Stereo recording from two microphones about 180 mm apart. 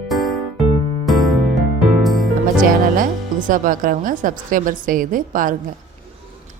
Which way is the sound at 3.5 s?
50° right (ahead or behind).